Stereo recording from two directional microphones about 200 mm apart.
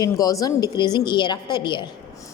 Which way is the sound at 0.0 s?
15° left (ahead or behind).